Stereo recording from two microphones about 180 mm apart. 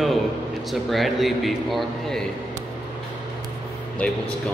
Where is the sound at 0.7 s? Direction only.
Centre (ahead or behind).